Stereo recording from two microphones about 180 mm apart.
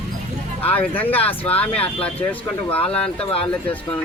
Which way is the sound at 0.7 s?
10° left (ahead or behind).